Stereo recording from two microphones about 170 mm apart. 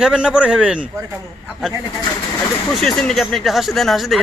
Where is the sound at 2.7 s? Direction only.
Centre (ahead or behind).